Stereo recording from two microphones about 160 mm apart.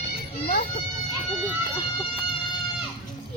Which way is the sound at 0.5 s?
60° left (ahead or behind).